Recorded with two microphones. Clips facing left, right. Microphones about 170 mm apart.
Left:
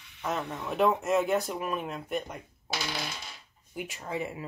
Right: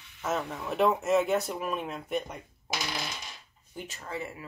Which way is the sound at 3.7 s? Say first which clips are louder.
Left 3 dB; 10° left (ahead or behind).